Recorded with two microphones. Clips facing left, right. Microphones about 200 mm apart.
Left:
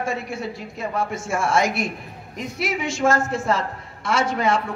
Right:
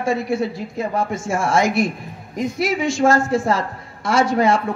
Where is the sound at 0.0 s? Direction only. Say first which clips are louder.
Right 7 dB; 35° right (ahead or behind).